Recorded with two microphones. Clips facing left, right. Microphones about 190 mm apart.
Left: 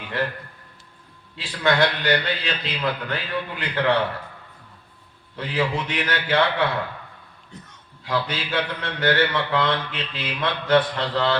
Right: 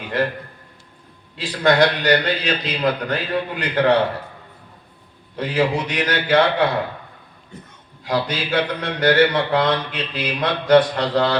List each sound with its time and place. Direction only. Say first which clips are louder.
1.4 s a man's voice: right 4 dB; 40° right (ahead or behind)
5.4 s a man's voice: right 5 dB; 40° right (ahead or behind)
8.0 s a man's voice: right 4 dB; 40° right (ahead or behind)